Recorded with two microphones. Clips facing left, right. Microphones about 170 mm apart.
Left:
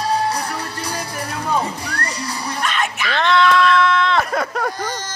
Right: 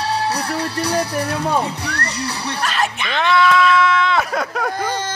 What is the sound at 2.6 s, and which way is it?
Music, 35° right (ahead or behind).